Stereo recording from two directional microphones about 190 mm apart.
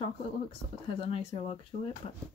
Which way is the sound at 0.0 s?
30° left (ahead or behind).